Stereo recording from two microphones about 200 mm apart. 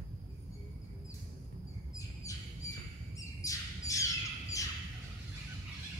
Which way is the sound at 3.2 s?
15° left (ahead or behind).